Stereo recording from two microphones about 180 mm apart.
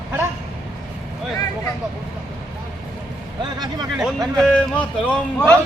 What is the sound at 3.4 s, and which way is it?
Vehicle, 20° right (ahead or behind).